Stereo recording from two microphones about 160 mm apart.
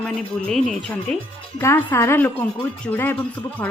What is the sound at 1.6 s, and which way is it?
Speech, 15° left (ahead or behind).